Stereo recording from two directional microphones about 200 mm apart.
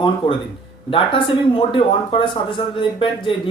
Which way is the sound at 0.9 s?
25° left (ahead or behind).